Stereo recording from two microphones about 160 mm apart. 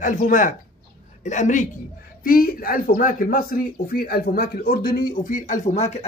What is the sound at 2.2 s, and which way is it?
Speech, 65° left (ahead or behind).